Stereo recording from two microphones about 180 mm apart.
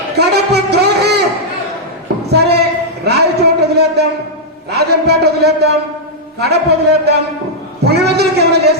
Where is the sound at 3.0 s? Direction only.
65° right (ahead or behind).